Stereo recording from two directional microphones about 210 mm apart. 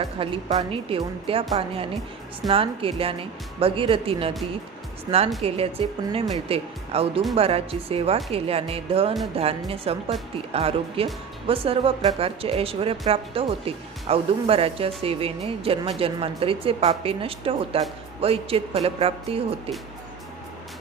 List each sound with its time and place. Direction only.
0.0 s speech: 25° right (ahead or behind)
5.4 s speech: 25° right (ahead or behind)